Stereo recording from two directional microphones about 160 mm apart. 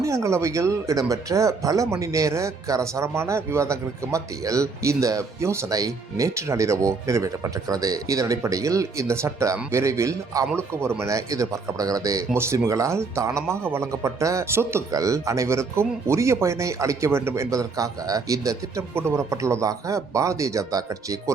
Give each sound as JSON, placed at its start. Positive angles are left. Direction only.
{"t": 0.0, "sound": "speech", "side_deg": -20}